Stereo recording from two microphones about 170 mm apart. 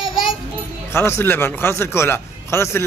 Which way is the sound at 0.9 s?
15° left (ahead or behind).